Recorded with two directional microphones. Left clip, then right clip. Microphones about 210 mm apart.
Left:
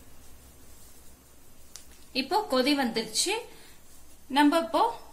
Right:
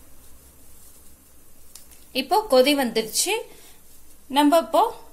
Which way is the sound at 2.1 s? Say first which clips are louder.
Right 8 dB; 30° right (ahead or behind).